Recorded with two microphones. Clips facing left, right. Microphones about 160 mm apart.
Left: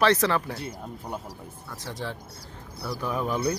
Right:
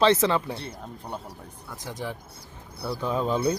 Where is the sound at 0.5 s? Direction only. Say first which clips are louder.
Left 1 dB; 5° left (ahead or behind).